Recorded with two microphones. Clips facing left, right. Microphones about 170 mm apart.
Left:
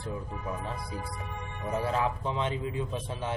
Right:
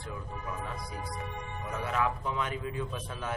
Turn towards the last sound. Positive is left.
turn(degrees=25)  # may be behind; listen again after turning